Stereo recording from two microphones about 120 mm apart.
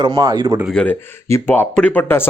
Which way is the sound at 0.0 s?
35° right (ahead or behind).